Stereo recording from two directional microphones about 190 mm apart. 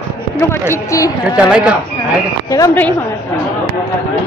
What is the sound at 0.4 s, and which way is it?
Speech, 10° left (ahead or behind).